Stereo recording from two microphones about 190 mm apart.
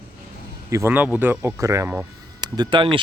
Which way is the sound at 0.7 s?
15° right (ahead or behind).